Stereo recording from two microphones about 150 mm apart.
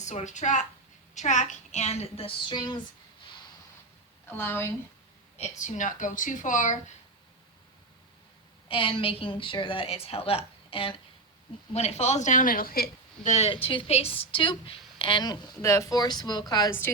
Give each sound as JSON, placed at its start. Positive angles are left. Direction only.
{"t": 0.0, "sound": "a woman's voice", "side_deg": 50}
{"t": 4.3, "sound": "a woman's voice", "side_deg": 15}
{"t": 5.4, "sound": "speech", "side_deg": 55}
{"t": 8.6, "sound": "a woman's voice", "side_deg": 35}
{"t": 13.2, "sound": "a woman's voice", "side_deg": 50}
{"t": 13.5, "sound": "a woman's voice", "side_deg": 35}